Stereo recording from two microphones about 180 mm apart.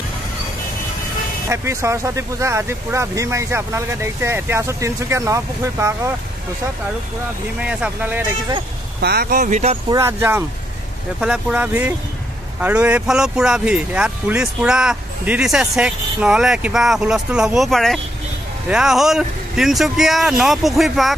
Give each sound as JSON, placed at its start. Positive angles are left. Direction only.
{"t": 1.5, "sound": "speech", "side_deg": -15}
{"t": 7.6, "sound": "speech", "side_deg": -10}
{"t": 9.0, "sound": "speech", "side_deg": -60}
{"t": 9.8, "sound": "speech", "side_deg": -15}